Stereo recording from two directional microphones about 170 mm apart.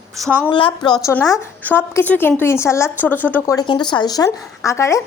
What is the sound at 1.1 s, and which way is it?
A woman's voice, 10° left (ahead or behind).